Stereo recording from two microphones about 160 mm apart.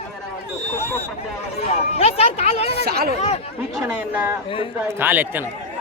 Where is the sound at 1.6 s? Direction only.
40° left (ahead or behind).